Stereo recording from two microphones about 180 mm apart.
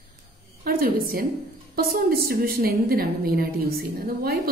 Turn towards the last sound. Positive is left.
turn(degrees=-55)  # may be behind; listen again after turning